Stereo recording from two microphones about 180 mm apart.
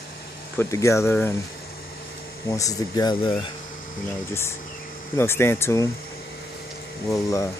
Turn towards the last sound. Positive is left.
turn(degrees=15)  # may be behind; listen again after turning